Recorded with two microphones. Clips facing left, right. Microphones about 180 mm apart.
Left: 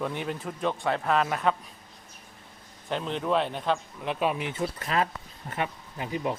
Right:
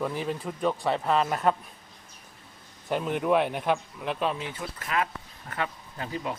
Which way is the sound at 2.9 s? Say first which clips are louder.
Right 3 dB; 10° right (ahead or behind).